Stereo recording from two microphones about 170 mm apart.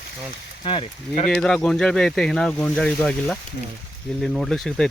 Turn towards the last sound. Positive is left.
turn(degrees=5)  # may be behind; listen again after turning